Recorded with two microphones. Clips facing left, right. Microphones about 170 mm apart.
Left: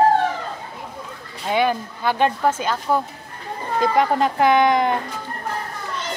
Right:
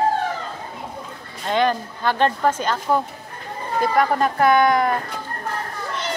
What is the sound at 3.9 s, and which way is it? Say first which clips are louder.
A woman's voice: even; 20° left (ahead or behind).